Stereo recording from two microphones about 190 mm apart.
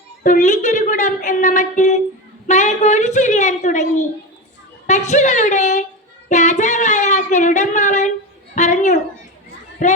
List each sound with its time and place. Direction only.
0.2 s a woman's voice: 40° left (ahead or behind)
6.2 s a sound: 40° left (ahead or behind)
9.8 s a woman's voice: 40° left (ahead or behind)